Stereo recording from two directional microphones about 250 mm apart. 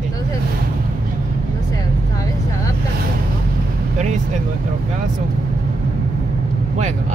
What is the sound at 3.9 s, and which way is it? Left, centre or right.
Speech, right.